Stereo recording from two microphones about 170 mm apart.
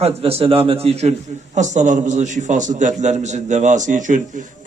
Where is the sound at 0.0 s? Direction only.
35° right (ahead or behind).